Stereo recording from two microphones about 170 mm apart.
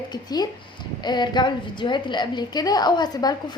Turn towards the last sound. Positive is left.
turn(degrees=25)  # may be behind; listen again after turning